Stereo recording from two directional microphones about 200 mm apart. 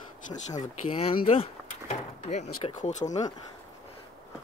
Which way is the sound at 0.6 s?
30° left (ahead or behind).